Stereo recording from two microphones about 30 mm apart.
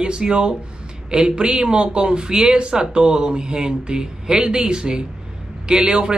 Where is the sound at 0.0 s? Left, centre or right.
Right.